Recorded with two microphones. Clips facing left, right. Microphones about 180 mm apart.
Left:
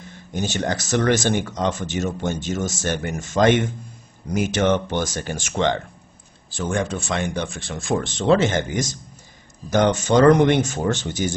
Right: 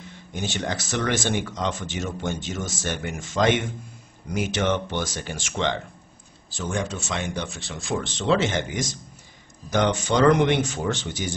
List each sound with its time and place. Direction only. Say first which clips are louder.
0.3 s speech: left 4 dB; 40° left (ahead or behind)